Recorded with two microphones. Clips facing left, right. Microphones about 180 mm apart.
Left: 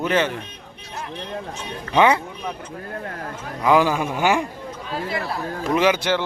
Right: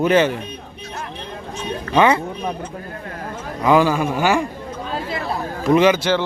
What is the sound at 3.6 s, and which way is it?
Speech, 15° left (ahead or behind).